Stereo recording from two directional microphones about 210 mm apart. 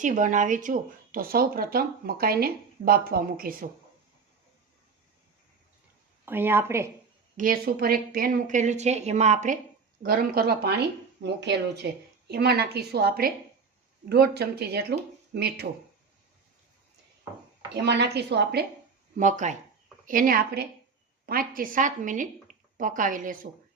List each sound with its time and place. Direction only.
0.0 s speech: 35° right (ahead or behind)
6.2 s a woman's voice: 10° right (ahead or behind)
7.3 s speech: 40° right (ahead or behind)
10.0 s speech: 45° right (ahead or behind)
17.7 s speech: 55° right (ahead or behind)
19.1 s speech: 35° right (ahead or behind)